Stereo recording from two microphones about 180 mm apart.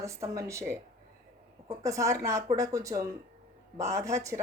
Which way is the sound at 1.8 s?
15° right (ahead or behind).